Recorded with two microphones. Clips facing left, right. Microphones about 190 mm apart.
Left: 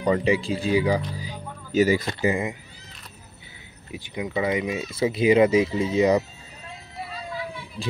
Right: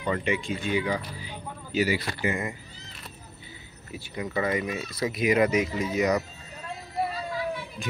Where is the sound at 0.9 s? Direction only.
40° left (ahead or behind).